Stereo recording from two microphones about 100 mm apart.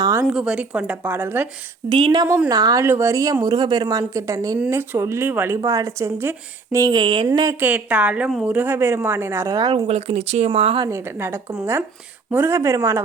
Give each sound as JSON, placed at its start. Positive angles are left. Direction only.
{"t": 0.0, "sound": "a sound", "side_deg": -30}
{"t": 0.3, "sound": "speech", "side_deg": -10}
{"t": 1.9, "sound": "a woman's voice", "side_deg": -50}
{"t": 2.5, "sound": "speech", "side_deg": -40}
{"t": 2.8, "sound": "speech", "side_deg": -30}
{"t": 3.4, "sound": "speech", "side_deg": -45}
{"t": 5.5, "sound": "speech", "side_deg": -30}
{"t": 6.9, "sound": "a woman's voice", "side_deg": -55}
{"t": 7.6, "sound": "speech", "side_deg": -15}
{"t": 9.6, "sound": "a woman's voice", "side_deg": -50}
{"t": 9.8, "sound": "speech", "side_deg": -90}
{"t": 10.8, "sound": "speech", "side_deg": -25}